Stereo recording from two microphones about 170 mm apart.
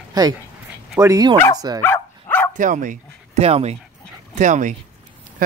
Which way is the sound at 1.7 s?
15° left (ahead or behind).